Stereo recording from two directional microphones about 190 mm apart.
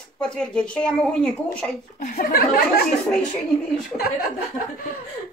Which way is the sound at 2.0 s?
45° left (ahead or behind).